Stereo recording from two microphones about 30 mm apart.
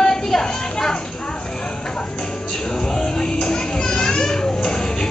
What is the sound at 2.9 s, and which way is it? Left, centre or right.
Children playing, left.